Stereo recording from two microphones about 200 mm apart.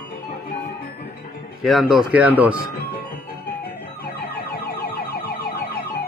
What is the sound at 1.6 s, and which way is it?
Speech, centre (ahead or behind).